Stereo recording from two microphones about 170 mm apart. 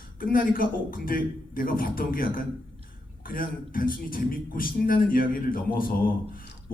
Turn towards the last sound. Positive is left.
turn(degrees=55)  # may be behind; listen again after turning